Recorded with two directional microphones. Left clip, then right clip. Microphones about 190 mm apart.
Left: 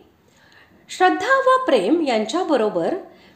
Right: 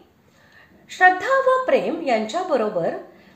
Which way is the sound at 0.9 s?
30° left (ahead or behind).